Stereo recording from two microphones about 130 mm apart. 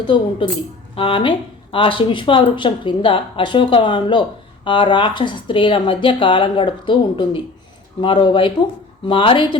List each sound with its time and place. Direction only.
0.4 s speech: 40° left (ahead or behind)